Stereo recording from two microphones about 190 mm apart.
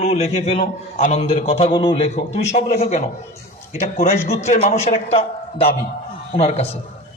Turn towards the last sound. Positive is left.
turn(degrees=35)  # may be behind; listen again after turning